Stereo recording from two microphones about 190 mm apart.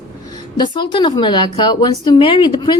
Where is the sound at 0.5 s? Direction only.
25° left (ahead or behind).